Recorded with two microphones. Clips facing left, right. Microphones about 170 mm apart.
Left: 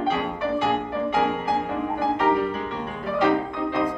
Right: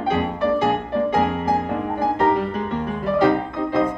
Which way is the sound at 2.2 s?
40° right (ahead or behind).